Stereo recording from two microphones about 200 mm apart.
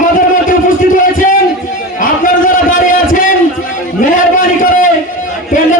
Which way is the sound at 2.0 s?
40° left (ahead or behind).